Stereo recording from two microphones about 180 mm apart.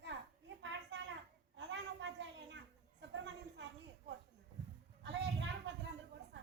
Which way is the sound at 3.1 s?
75° right (ahead or behind).